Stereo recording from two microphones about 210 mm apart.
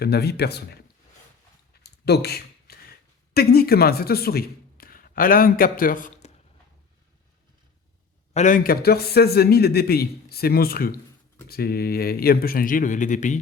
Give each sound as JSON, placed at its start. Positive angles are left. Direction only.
{"t": 0.0, "sound": "a man's voice", "side_deg": 50}
{"t": 1.8, "sound": "a sound", "side_deg": 50}
{"t": 3.3, "sound": "a man's voice", "side_deg": 45}
{"t": 8.3, "sound": "a man's voice", "side_deg": 35}